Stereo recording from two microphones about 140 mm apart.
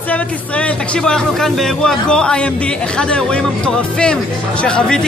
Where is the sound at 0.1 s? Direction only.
5° left (ahead or behind).